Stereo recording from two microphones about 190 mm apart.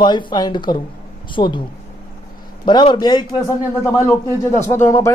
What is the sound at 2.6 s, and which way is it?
Speech, 25° left (ahead or behind).